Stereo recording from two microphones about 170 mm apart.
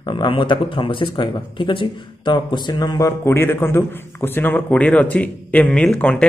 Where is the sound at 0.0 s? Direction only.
25° left (ahead or behind).